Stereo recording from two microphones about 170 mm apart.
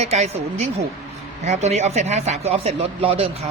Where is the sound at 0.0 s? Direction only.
40° right (ahead or behind).